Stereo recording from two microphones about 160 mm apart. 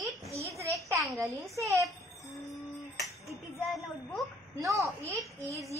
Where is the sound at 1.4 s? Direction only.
20° right (ahead or behind).